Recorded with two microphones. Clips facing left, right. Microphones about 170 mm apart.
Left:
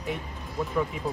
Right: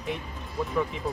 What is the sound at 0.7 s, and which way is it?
Speech, 5° left (ahead or behind).